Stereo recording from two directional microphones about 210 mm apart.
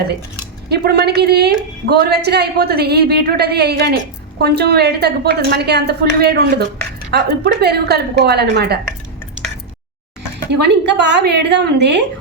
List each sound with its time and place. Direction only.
0.7 s a woman's voice: 50° right (ahead or behind)
10.5 s a woman's voice: 55° right (ahead or behind)